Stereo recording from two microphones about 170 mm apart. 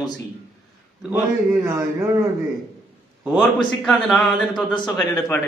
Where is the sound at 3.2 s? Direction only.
5° left (ahead or behind).